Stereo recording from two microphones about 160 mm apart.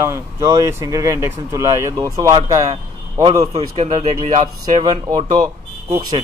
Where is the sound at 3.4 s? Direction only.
40° right (ahead or behind).